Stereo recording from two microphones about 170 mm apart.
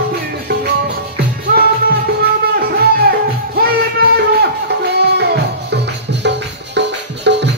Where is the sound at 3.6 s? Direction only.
70° right (ahead or behind).